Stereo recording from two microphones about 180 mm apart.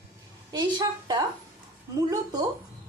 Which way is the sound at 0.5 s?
25° right (ahead or behind).